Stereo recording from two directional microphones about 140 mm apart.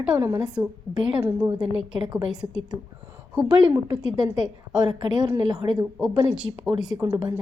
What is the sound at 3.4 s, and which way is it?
A woman's voice, 35° right (ahead or behind).